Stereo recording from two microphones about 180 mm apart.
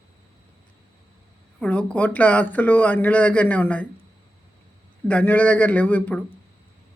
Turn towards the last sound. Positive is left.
turn(degrees=10)  # may be behind; listen again after turning